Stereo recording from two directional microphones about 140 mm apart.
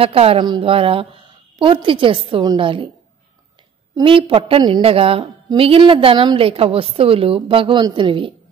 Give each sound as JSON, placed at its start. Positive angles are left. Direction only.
{"t": 0.0, "sound": "a woman's voice", "side_deg": -45}
{"t": 4.0, "sound": "a woman's voice", "side_deg": -40}